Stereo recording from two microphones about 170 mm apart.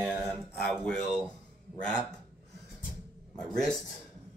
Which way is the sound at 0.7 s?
5° left (ahead or behind).